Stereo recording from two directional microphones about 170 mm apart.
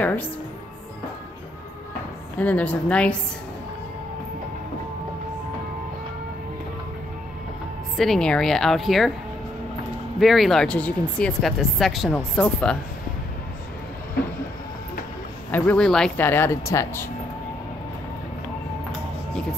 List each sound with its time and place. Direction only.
0.0 s speech: 10° left (ahead or behind)
2.3 s speech: 10° left (ahead or behind)
8.0 s speech: 5° left (ahead or behind)
10.2 s speech: centre (ahead or behind)
15.5 s speech: 10° left (ahead or behind)